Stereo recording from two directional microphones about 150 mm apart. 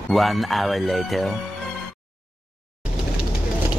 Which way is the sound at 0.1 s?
Centre (ahead or behind).